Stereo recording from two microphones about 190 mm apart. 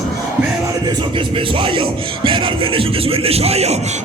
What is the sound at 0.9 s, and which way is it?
Speech, 25° right (ahead or behind).